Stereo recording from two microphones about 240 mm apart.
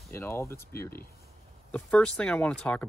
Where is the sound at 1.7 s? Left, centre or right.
Centre.